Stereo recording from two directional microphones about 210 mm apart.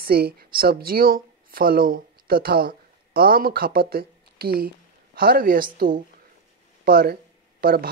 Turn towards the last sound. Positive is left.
turn(degrees=-45)  # may be behind; listen again after turning